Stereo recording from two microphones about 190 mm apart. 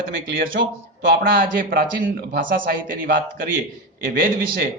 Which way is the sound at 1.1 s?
50° right (ahead or behind).